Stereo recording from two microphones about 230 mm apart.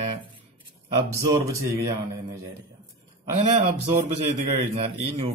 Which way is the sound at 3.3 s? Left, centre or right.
Right.